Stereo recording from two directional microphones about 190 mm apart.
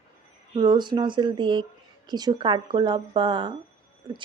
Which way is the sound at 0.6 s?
25° right (ahead or behind).